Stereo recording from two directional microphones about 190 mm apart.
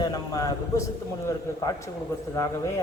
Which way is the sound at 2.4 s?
15° left (ahead or behind).